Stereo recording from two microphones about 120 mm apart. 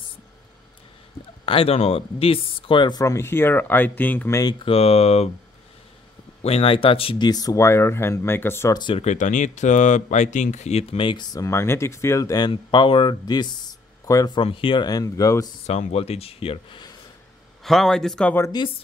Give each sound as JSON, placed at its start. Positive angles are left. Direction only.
{"t": 1.4, "sound": "speech", "side_deg": 50}
{"t": 3.0, "sound": "speech", "side_deg": 25}
{"t": 4.4, "sound": "speech", "side_deg": 35}
{"t": 4.6, "sound": "speech", "side_deg": 55}
{"t": 6.4, "sound": "speech", "side_deg": 55}
{"t": 7.2, "sound": "speech", "side_deg": 30}
{"t": 8.7, "sound": "speech", "side_deg": 40}
{"t": 9.0, "sound": "speech", "side_deg": 85}
{"t": 11.3, "sound": "speech", "side_deg": 25}
{"t": 14.3, "sound": "speech", "side_deg": 45}
{"t": 14.9, "sound": "speech", "side_deg": 30}
{"t": 15.6, "sound": "speech", "side_deg": 60}
{"t": 17.6, "sound": "a man's voice", "side_deg": 5}